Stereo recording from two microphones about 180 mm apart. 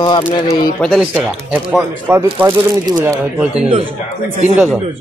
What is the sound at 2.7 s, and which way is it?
Speech, 20° right (ahead or behind).